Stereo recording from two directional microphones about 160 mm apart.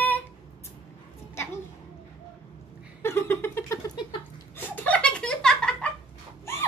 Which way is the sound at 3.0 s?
15° left (ahead or behind).